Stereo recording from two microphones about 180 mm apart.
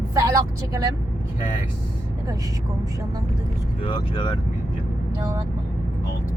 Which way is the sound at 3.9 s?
25° left (ahead or behind).